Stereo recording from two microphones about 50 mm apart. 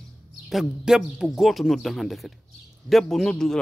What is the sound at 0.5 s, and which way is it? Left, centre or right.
Speech, centre.